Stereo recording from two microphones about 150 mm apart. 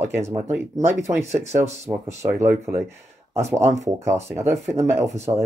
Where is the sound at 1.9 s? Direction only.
20° right (ahead or behind).